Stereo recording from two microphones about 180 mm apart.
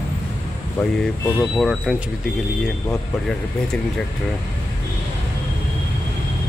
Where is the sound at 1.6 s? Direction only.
Centre (ahead or behind).